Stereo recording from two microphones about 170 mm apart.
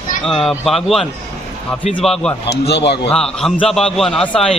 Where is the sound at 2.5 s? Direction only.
80° left.